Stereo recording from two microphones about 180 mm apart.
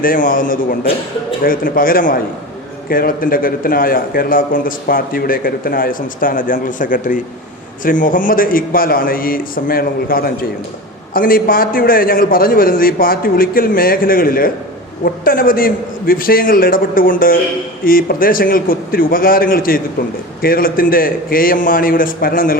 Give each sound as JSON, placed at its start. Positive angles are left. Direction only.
{"t": 0.0, "sound": "a man's voice", "side_deg": 50}